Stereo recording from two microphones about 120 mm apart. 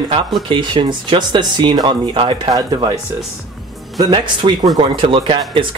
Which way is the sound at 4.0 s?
40° right (ahead or behind).